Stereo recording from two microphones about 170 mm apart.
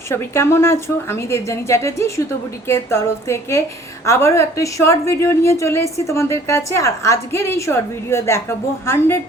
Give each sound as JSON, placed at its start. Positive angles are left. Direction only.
{"t": 0.1, "sound": "a woman's voice", "side_deg": 15}